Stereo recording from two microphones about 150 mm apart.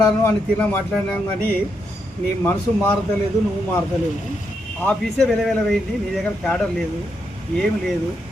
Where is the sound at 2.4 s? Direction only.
15° left (ahead or behind).